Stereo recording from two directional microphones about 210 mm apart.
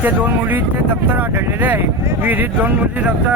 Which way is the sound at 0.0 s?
10° right (ahead or behind).